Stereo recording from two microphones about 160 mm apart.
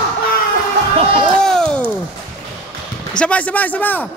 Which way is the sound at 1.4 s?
5° left (ahead or behind).